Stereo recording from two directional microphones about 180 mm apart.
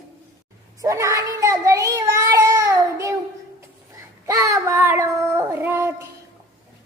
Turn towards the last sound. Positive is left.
turn(degrees=-15)  # may be behind; listen again after turning